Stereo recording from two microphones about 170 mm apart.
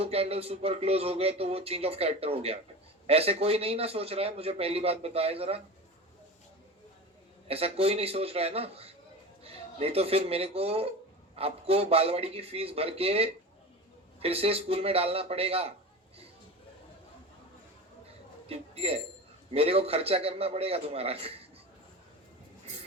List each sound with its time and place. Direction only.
0.0 s a man's voice: 35° right (ahead or behind)
7.4 s a man's voice: 35° right (ahead or behind)
18.4 s a man's voice: 35° right (ahead or behind)